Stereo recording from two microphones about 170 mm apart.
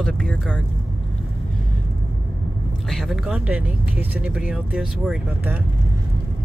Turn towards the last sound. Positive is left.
turn(degrees=-5)  # may be behind; listen again after turning